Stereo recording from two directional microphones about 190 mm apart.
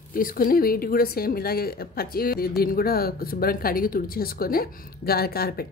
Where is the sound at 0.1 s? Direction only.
50° left (ahead or behind).